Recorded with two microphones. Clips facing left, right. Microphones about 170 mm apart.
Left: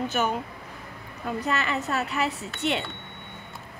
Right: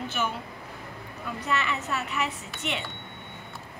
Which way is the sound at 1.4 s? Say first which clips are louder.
Left 1 dB; 40° left (ahead or behind).